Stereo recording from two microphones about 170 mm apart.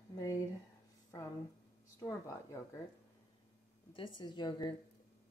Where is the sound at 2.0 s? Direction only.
15° left (ahead or behind).